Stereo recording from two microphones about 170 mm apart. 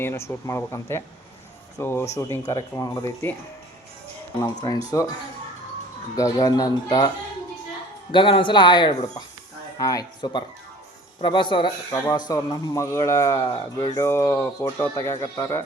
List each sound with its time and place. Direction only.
0.0 s speech: 15° left (ahead or behind)
4.6 s speech: 20° left (ahead or behind)
6.1 s speech: 20° left (ahead or behind)
8.1 s speech: 30° left (ahead or behind)